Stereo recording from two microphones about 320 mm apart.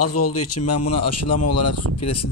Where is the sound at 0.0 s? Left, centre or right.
Left.